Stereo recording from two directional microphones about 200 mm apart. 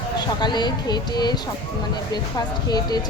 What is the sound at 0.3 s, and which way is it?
A woman's voice, 20° left (ahead or behind).